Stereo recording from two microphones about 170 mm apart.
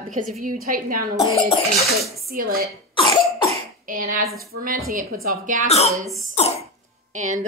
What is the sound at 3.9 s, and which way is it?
A woman's voice, 50° right (ahead or behind).